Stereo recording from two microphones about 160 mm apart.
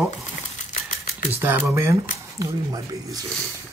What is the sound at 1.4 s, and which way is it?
Speech, 10° right (ahead or behind).